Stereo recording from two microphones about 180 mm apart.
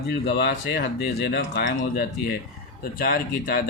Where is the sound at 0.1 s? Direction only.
60° left (ahead or behind).